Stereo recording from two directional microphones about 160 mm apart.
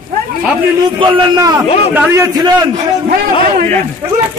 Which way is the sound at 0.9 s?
25° right (ahead or behind).